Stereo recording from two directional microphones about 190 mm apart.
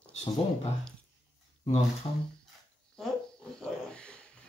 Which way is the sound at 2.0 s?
25° left (ahead or behind).